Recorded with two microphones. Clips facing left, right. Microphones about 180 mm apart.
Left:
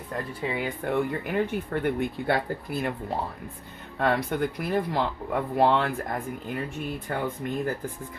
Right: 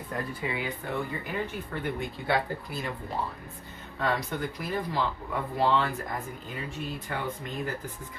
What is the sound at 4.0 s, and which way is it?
Speech, 60° left (ahead or behind).